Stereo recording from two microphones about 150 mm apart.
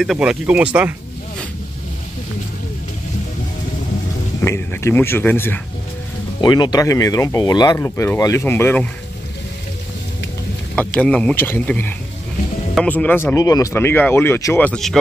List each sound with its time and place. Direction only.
0.0 s speech: 5° right (ahead or behind)
4.5 s speech: 15° left (ahead or behind)
6.4 s speech: 25° left (ahead or behind)
10.8 s speech: 10° left (ahead or behind)